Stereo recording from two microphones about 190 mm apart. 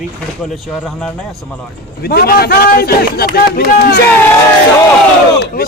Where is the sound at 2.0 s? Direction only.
55° left (ahead or behind).